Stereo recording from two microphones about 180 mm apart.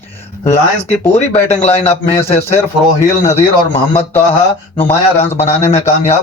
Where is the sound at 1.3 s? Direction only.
40° left (ahead or behind).